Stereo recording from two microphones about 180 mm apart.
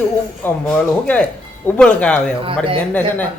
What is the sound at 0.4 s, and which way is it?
Speech, 10° left (ahead or behind).